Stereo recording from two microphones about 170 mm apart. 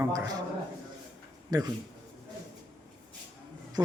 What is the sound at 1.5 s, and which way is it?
Speech, 20° right (ahead or behind).